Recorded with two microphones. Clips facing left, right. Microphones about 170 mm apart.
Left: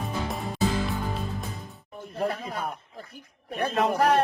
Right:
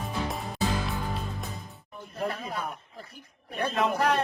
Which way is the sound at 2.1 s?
45° left (ahead or behind).